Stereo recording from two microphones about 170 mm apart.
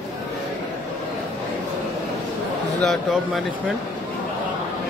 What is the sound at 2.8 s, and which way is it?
Speech, centre (ahead or behind).